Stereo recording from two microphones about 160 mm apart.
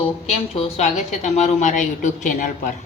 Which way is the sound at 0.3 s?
40° left (ahead or behind).